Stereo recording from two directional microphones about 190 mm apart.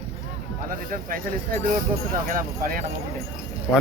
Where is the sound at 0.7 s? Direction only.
45° right (ahead or behind).